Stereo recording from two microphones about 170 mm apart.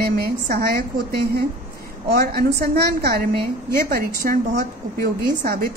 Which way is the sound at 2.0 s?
65° right (ahead or behind).